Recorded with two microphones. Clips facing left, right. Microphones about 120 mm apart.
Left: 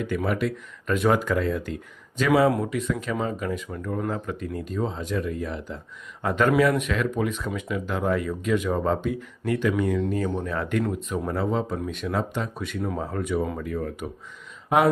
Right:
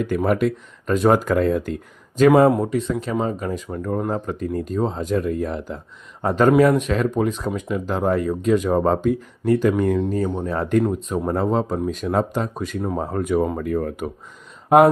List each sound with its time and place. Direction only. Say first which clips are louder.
0.3 s speech: right 7 dB; 50° right (ahead or behind)
0.9 s speech: right 5 dB; 35° right (ahead or behind)
2.5 s speech: right 5 dB; 30° right (ahead or behind)
6.2 s speech: right 5 dB; 30° right (ahead or behind)
10.2 s speech: right 4 dB; 30° right (ahead or behind); by 14.1 s 50° right (ahead or behind)